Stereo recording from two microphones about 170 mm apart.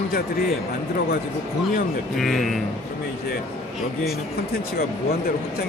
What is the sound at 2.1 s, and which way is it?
Speech, centre (ahead or behind).